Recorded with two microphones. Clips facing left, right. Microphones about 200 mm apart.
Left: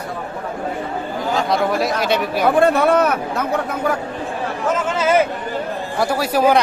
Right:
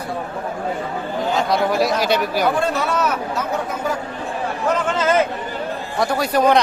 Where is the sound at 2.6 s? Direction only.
55° left (ahead or behind).